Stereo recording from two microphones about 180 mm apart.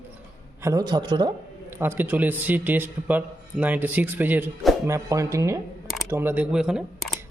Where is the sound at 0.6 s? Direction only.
20° right (ahead or behind).